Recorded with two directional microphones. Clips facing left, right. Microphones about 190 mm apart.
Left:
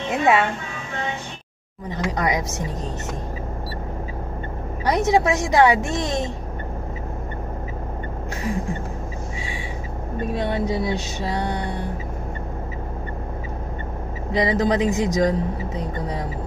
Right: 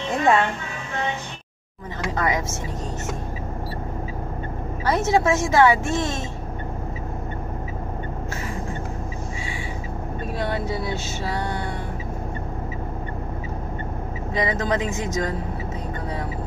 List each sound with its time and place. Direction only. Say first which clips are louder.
0.1 s speech: left 1 dB; 5° left (ahead or behind)
2.0 s a woman's voice: left 1 dB; 15° left (ahead or behind)
4.8 s a woman's voice: left 1 dB; 15° left (ahead or behind)
10.3 s music: left 3 dB; 20° left (ahead or behind)
14.3 s music: left 4 dB; 20° left (ahead or behind)